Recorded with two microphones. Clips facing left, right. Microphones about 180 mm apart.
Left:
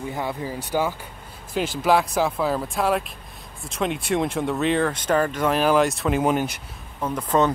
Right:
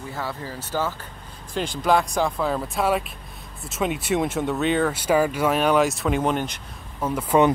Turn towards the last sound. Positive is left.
turn(degrees=-10)  # may be behind; listen again after turning